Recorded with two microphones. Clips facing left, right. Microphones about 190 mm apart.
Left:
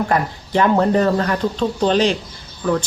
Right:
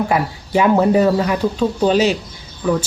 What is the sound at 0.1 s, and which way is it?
Speech, 10° right (ahead or behind).